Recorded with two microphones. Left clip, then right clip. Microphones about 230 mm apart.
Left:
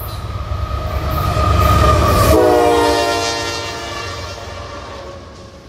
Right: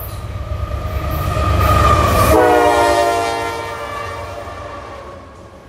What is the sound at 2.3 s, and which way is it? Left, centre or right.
Train, right.